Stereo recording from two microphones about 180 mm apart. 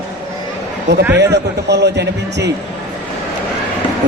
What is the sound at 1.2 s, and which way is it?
A man's voice, 70° right (ahead or behind).